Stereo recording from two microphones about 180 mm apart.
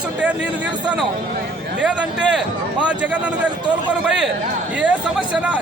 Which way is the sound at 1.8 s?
5° right (ahead or behind).